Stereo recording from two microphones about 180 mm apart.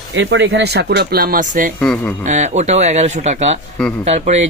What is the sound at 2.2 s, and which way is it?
Speech, 40° right (ahead or behind).